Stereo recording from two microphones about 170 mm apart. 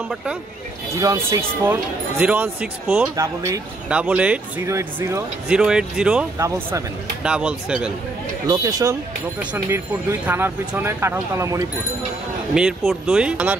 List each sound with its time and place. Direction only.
0.1 s speech: 5° right (ahead or behind)
0.9 s speech: 20° right (ahead or behind)
3.9 s speech: 5° right (ahead or behind)
5.5 s speech: 5° right (ahead or behind)
6.3 s speech: 15° right (ahead or behind)
7.2 s speech: 5° right (ahead or behind)
8.5 s speech: 20° right (ahead or behind)
9.4 s speech: 10° right (ahead or behind)
12.5 s speech: 5° right (ahead or behind)